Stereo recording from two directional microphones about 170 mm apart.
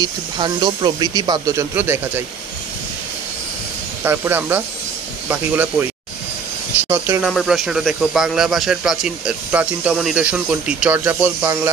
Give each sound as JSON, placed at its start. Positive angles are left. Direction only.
{"t": 0.0, "sound": "speech", "side_deg": -25}
{"t": 4.0, "sound": "speech", "side_deg": -15}
{"t": 6.9, "sound": "speech", "side_deg": -10}
{"t": 7.2, "sound": "speech", "side_deg": 0}